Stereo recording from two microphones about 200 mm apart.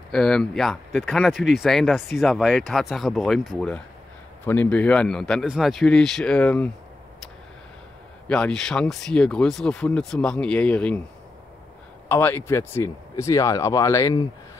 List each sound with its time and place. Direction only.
0.1 s speech: 5° left (ahead or behind)
8.3 s speech: 5° left (ahead or behind)
12.1 s speech: 10° left (ahead or behind)